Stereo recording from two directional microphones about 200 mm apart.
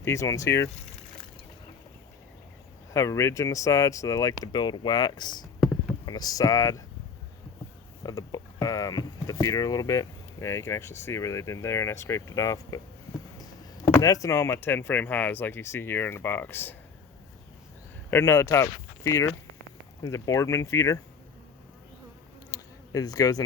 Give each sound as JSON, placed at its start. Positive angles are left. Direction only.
{"t": 0.0, "sound": "speech", "side_deg": 15}
{"t": 2.9, "sound": "speech", "side_deg": 15}
{"t": 8.0, "sound": "speech", "side_deg": 20}
{"t": 13.9, "sound": "speech", "side_deg": 15}
{"t": 18.1, "sound": "speech", "side_deg": 15}
{"t": 22.5, "sound": "bee", "side_deg": 15}